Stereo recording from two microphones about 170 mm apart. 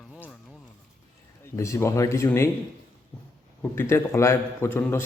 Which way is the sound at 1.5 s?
15° left (ahead or behind).